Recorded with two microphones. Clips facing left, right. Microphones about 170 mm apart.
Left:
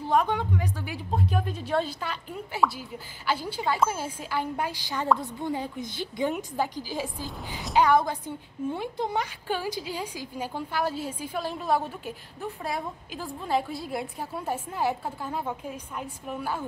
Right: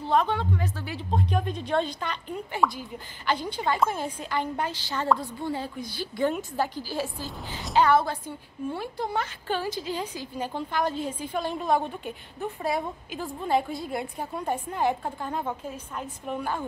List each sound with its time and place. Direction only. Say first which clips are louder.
0.0 s a woman's voice: even; 10° left (ahead or behind)